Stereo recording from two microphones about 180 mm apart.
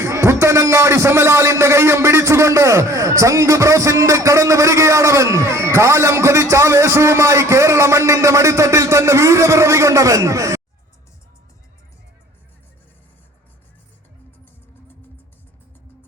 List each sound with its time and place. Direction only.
0.0 s a man's voice: 15° right (ahead or behind)